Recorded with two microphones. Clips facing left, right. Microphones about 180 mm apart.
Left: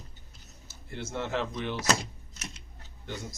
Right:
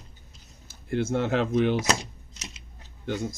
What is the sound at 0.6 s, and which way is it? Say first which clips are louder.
Speech: right 13 dB; 50° right (ahead or behind).